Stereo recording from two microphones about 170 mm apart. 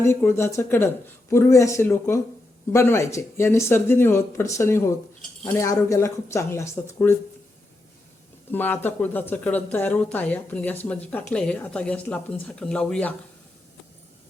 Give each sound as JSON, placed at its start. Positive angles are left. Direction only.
{"t": 0.0, "sound": "speech", "side_deg": 15}
{"t": 8.4, "sound": "speech", "side_deg": 10}